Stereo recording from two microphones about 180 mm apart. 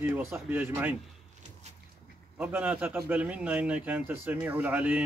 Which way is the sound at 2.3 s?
10° right (ahead or behind).